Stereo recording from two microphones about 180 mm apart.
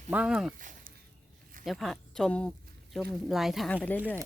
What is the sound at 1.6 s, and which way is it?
Speech, centre (ahead or behind).